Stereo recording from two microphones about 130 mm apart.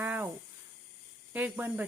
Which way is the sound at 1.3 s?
15° right (ahead or behind).